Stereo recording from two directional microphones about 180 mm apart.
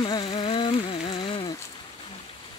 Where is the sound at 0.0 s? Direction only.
25° left (ahead or behind).